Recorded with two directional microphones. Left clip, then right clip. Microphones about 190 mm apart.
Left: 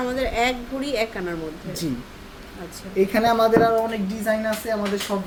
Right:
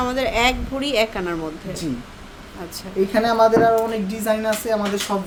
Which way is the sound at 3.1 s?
10° left (ahead or behind).